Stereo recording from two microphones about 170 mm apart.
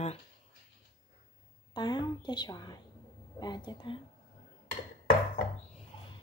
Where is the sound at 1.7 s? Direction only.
25° left (ahead or behind).